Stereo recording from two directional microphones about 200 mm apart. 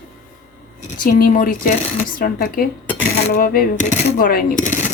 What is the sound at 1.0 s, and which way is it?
Speech, 45° left (ahead or behind).